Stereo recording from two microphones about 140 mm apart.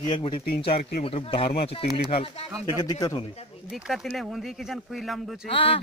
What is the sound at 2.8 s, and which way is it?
Speech, 30° left (ahead or behind).